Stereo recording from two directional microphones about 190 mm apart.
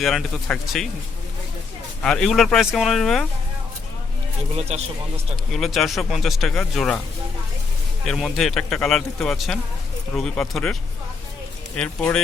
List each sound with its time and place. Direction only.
0.0 s speech: centre (ahead or behind)
2.0 s speech: 5° left (ahead or behind)
4.7 s speech: 35° right (ahead or behind)
5.5 s speech: centre (ahead or behind)
8.0 s speech: centre (ahead or behind)
11.8 s speech: 5° left (ahead or behind)